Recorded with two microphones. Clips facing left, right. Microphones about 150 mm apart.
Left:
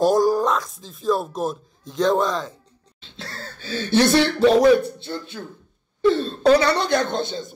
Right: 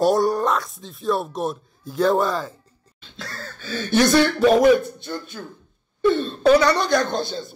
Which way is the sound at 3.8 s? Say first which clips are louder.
Even; 25° left (ahead or behind).